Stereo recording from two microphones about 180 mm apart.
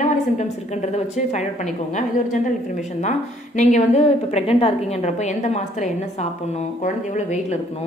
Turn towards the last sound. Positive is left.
turn(degrees=40)  # may be behind; listen again after turning